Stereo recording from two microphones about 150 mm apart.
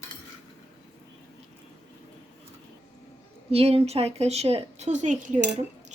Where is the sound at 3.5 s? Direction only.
40° right (ahead or behind).